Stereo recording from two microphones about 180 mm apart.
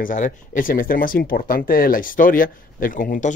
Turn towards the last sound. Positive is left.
turn(degrees=50)  # may be behind; listen again after turning